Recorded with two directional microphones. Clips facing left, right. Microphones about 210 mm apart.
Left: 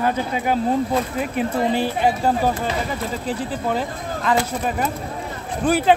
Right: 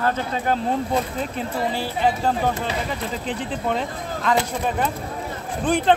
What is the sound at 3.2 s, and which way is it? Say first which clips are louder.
Speech: left 1 dB; 5° left (ahead or behind).